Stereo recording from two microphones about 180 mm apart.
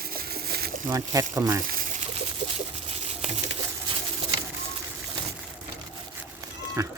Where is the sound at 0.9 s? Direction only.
20° right (ahead or behind).